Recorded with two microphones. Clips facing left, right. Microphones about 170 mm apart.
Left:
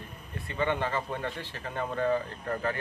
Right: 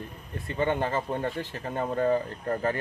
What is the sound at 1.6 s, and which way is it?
Speech, 35° right (ahead or behind).